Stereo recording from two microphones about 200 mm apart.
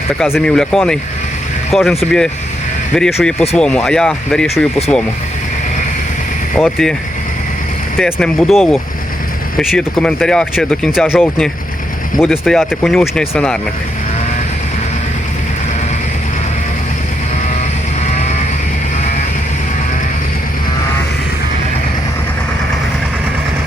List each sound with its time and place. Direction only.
0.2 s speech: 5° left (ahead or behind)
6.6 s speech: centre (ahead or behind)
7.9 s speech: 5° left (ahead or behind)
18.0 s sheep: 35° left (ahead or behind)